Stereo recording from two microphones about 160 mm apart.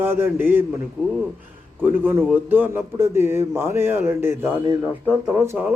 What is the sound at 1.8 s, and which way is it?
Speech, 10° right (ahead or behind).